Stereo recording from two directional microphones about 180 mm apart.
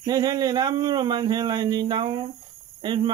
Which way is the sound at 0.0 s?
20° right (ahead or behind).